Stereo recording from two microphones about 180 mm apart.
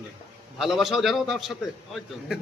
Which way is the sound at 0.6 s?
Centre (ahead or behind).